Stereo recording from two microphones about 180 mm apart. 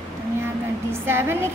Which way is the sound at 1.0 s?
15° right (ahead or behind).